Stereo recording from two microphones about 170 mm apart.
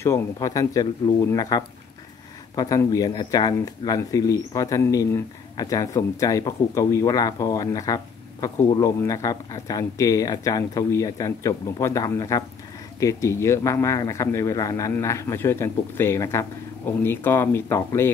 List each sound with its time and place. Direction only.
0.0 s speech: 15° left (ahead or behind)